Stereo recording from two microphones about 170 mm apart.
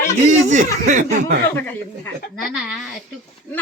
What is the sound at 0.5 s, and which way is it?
Speech, 45° right (ahead or behind).